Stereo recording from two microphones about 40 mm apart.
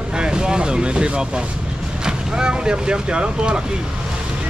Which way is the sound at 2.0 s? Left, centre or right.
Centre.